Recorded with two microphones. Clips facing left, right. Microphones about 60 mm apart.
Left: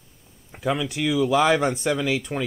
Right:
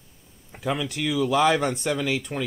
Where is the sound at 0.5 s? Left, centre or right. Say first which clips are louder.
Left 2 dB; centre.